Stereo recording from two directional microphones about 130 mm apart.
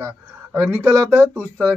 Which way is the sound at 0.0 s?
20° right (ahead or behind).